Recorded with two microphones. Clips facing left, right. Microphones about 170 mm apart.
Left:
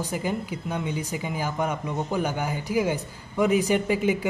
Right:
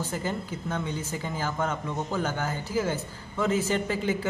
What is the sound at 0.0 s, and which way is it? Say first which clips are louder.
A man's voice: left 3 dB; 10° left (ahead or behind).